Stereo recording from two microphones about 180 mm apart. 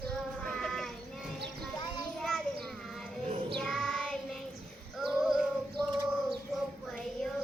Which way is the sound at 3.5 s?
Centre (ahead or behind).